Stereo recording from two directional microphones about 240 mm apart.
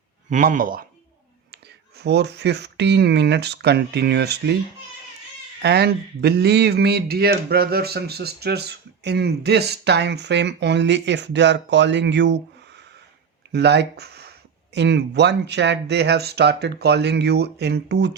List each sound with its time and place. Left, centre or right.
0.3 s speech: right
2.0 s speech: right
5.6 s speech: right
13.5 s speech: right